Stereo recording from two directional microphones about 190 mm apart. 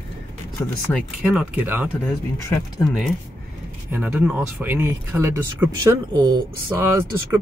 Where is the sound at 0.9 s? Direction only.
10° left (ahead or behind).